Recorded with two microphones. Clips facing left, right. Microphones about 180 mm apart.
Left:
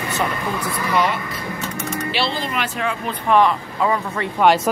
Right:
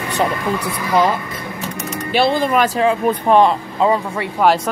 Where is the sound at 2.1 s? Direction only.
50° right (ahead or behind).